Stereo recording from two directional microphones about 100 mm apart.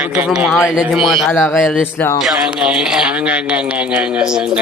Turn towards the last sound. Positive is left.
turn(degrees=-10)  # may be behind; listen again after turning